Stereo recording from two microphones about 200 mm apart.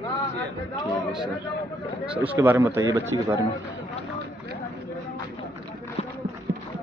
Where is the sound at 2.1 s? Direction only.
10° right (ahead or behind).